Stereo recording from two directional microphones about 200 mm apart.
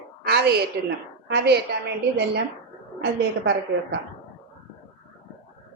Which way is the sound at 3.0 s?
60° right (ahead or behind).